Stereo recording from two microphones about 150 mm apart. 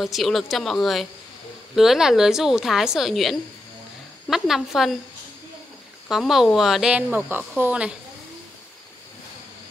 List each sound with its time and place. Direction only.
0.0 s a woman's voice: centre (ahead or behind)
6.0 s speech: centre (ahead or behind)